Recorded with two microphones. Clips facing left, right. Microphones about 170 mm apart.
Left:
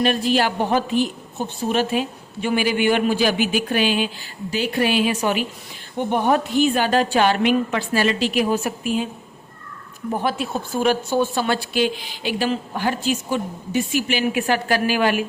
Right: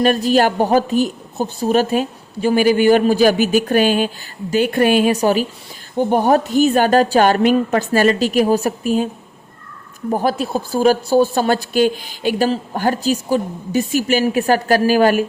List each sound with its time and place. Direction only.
0.0 s a woman's voice: 45° right (ahead or behind)
10.1 s speech: 40° right (ahead or behind)